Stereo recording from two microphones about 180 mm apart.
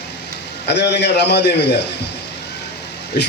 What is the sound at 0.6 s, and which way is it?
A man's voice, 70° left (ahead or behind).